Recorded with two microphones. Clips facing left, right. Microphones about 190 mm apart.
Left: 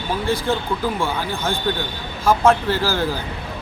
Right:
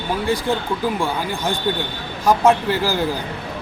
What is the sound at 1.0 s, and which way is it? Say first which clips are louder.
Speech: right 1 dB; 15° right (ahead or behind).